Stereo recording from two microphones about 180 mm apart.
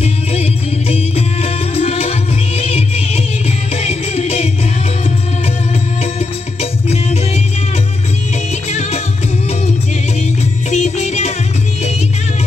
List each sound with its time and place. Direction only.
0.0 s music: 35° left (ahead or behind)
6.1 s music: 35° left (ahead or behind)
10.7 s music: 40° left (ahead or behind)